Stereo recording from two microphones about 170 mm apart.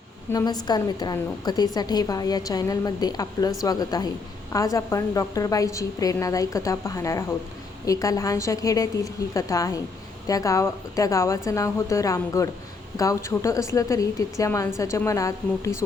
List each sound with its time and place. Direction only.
0.3 s a woman's voice: 25° left (ahead or behind)